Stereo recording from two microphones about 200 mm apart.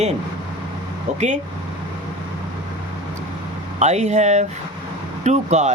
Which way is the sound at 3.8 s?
35° right (ahead or behind).